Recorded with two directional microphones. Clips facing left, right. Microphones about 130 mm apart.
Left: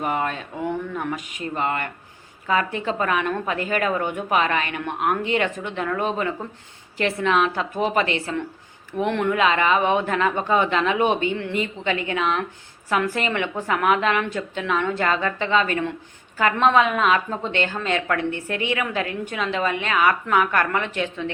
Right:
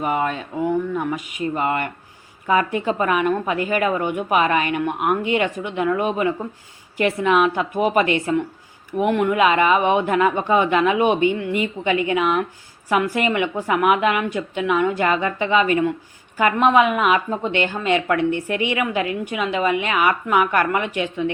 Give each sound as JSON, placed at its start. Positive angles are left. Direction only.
{"t": 0.0, "sound": "speech", "side_deg": -5}
{"t": 1.5, "sound": "speech", "side_deg": -15}